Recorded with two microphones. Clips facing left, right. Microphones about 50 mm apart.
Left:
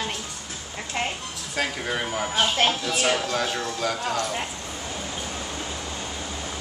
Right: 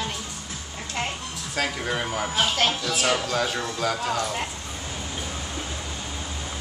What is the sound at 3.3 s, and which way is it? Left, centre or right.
Speech, centre.